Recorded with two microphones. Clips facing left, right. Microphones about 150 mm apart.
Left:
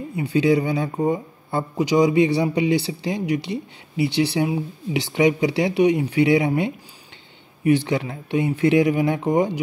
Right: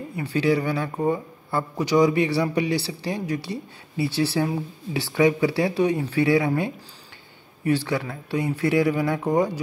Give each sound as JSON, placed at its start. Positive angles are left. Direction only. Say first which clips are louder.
{"t": 0.1, "sound": "speech", "louder": "left 4 dB", "side_deg": 20}